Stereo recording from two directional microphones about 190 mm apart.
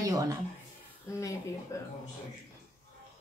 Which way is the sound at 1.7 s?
15° left (ahead or behind).